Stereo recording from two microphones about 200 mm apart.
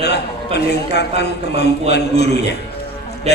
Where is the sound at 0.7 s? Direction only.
55° left (ahead or behind).